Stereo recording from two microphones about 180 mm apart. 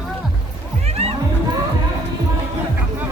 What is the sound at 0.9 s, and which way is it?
Music, 35° right (ahead or behind).